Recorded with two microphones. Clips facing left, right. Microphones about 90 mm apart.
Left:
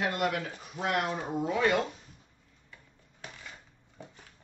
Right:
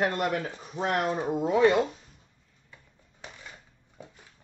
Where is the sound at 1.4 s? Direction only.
25° right (ahead or behind).